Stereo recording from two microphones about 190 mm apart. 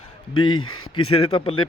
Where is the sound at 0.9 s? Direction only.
30° left (ahead or behind).